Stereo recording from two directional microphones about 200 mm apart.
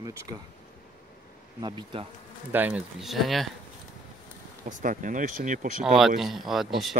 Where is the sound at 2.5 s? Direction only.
10° right (ahead or behind).